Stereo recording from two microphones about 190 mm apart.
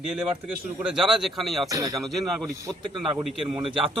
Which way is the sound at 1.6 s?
20° right (ahead or behind).